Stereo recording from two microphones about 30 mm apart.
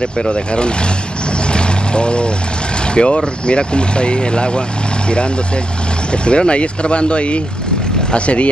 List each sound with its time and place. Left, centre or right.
0.2 s speech: left
1.5 s vehicle: left
2.9 s speech: left
6.2 s speech: left